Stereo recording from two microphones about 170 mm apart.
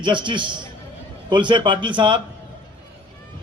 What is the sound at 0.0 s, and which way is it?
A man's voice, 30° right (ahead or behind).